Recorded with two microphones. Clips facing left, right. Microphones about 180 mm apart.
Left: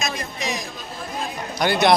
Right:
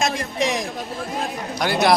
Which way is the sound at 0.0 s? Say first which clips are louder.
Right 6 dB; 75° right (ahead or behind).